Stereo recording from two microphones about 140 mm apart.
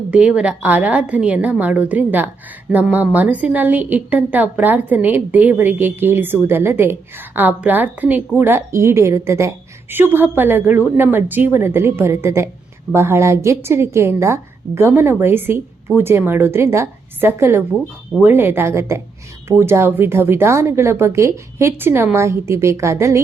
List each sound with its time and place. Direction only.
0.1 s a woman's voice: 10° right (ahead or behind)